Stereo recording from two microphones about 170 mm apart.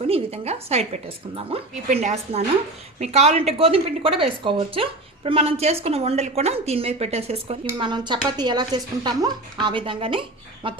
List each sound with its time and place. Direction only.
0.1 s a woman's voice: 40° right (ahead or behind)